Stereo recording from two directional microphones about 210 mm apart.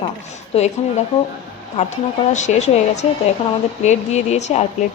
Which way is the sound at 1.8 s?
30° left (ahead or behind).